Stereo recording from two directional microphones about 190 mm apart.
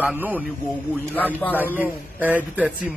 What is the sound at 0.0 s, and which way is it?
Speech, 10° right (ahead or behind).